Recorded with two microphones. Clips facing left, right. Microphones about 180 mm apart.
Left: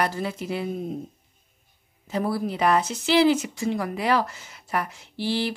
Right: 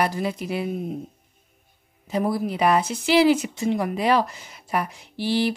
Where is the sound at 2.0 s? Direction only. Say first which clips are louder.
Right 2 dB; 15° right (ahead or behind).